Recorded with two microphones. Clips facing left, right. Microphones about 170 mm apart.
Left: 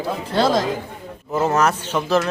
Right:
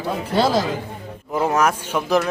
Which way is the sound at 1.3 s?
10° right (ahead or behind).